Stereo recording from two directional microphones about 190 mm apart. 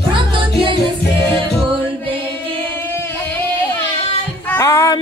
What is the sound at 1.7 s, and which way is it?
Music, 25° right (ahead or behind).